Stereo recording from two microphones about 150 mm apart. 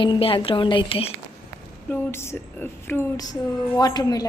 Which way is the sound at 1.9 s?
15° left (ahead or behind).